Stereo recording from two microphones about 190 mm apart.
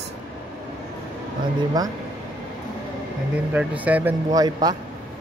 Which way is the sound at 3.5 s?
10° right (ahead or behind).